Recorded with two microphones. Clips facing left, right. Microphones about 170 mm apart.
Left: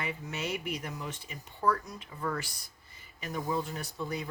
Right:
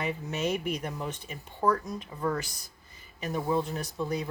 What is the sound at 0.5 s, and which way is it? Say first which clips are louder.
Speech: right 5 dB; 35° right (ahead or behind).